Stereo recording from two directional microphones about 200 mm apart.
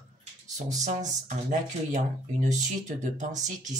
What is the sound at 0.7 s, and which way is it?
Speech, 35° right (ahead or behind).